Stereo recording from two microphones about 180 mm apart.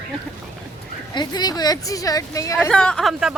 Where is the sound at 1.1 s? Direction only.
25° left (ahead or behind).